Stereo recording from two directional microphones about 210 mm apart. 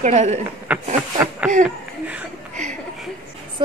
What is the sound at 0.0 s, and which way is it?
Speech, 35° right (ahead or behind).